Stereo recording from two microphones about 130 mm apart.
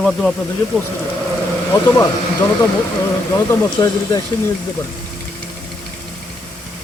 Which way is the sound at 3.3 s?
25° left (ahead or behind).